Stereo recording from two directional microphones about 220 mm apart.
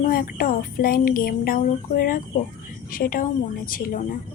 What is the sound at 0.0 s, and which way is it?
Speech, 40° left (ahead or behind).